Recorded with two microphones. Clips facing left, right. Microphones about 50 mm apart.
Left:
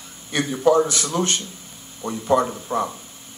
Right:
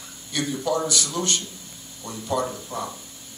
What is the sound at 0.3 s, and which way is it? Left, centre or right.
A man's voice, left.